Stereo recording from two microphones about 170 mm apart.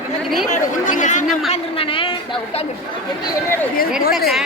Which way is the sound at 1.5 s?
30° left (ahead or behind).